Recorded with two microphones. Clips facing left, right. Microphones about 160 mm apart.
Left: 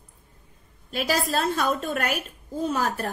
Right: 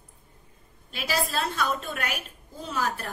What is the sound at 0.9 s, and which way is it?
A woman's voice, 45° left (ahead or behind).